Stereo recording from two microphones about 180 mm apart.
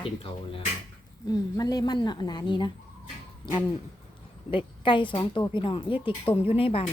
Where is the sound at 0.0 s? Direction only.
30° left (ahead or behind).